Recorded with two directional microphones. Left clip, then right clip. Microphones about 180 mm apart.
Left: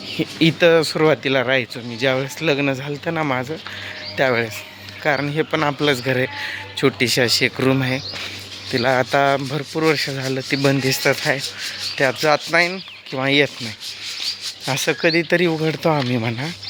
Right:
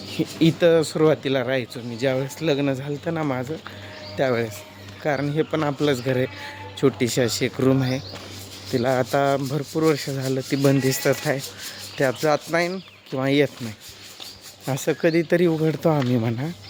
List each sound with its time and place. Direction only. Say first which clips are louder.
0.2 s a man's voice: left 3 dB; 5° left (ahead or behind); by 13.5 s 15° right (ahead or behind)
14.7 s speech: left 3 dB; 15° right (ahead or behind)